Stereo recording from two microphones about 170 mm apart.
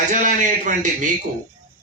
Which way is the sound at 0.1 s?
50° right (ahead or behind).